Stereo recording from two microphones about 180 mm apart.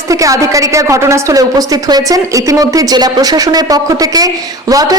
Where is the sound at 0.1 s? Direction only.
20° right (ahead or behind).